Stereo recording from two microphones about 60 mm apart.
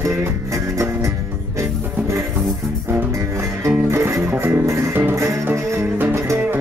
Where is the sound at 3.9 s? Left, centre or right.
Right.